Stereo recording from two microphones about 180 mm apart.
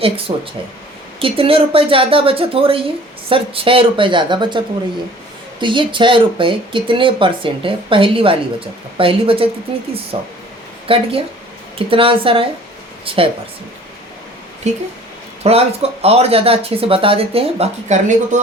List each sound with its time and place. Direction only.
0.3 s speech: 30° right (ahead or behind)
14.6 s speech: 40° right (ahead or behind)